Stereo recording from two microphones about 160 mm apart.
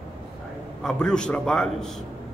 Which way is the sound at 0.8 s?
5° left (ahead or behind).